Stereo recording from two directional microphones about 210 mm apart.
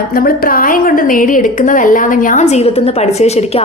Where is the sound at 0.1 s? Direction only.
45° left (ahead or behind).